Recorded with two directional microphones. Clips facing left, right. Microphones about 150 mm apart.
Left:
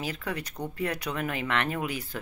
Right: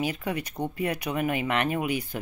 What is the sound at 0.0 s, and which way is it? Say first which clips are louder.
Speech: right 4 dB; 15° right (ahead or behind).